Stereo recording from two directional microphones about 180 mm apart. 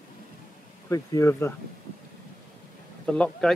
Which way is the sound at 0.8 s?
15° left (ahead or behind).